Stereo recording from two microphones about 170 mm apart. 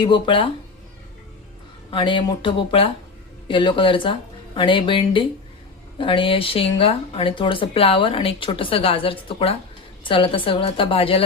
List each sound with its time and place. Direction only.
0.0 s speech: 30° left (ahead or behind)
1.9 s speech: 30° left (ahead or behind)